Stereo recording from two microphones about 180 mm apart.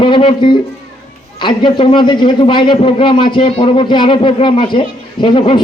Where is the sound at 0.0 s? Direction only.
30° left (ahead or behind).